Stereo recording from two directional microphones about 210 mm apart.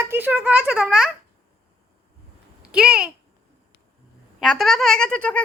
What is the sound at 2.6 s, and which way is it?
Speech, 5° right (ahead or behind).